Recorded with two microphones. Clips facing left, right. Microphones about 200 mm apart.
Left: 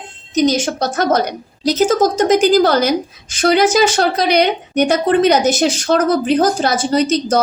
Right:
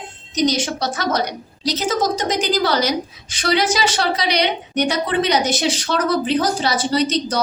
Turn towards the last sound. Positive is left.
turn(degrees=45)  # may be behind; listen again after turning